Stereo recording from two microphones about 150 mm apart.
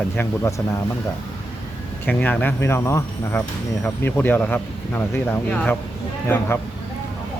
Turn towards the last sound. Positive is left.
turn(degrees=15)  # may be behind; listen again after turning